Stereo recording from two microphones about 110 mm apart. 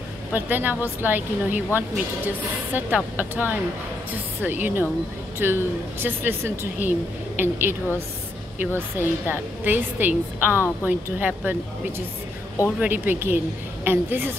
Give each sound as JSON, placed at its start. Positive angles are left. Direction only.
{"t": 0.3, "sound": "a woman's voice", "side_deg": -15}
{"t": 12.7, "sound": "a woman's voice", "side_deg": -15}